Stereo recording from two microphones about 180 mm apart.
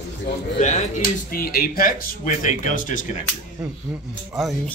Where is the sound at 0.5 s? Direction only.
40° left (ahead or behind).